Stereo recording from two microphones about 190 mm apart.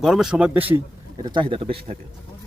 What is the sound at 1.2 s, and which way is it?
Speech, 25° right (ahead or behind).